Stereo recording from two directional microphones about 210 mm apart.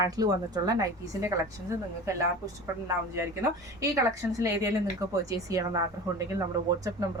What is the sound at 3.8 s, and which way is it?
A woman's voice, 15° right (ahead or behind).